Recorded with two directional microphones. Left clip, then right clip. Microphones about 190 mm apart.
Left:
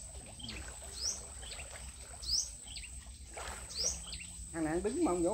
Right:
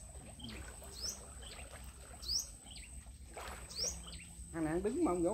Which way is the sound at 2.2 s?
30° right (ahead or behind).